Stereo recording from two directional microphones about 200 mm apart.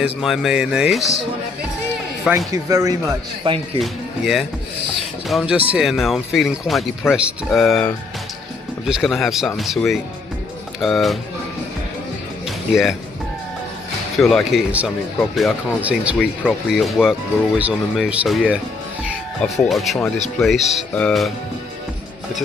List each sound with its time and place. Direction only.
0.0 s speech: centre (ahead or behind)
2.3 s a man's voice: 15° right (ahead or behind)
3.8 s speech: centre (ahead or behind)
14.1 s a man's voice: centre (ahead or behind)